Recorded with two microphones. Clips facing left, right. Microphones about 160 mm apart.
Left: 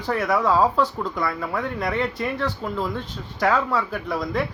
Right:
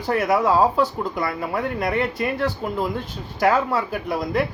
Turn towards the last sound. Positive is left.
turn(degrees=-10)  # may be behind; listen again after turning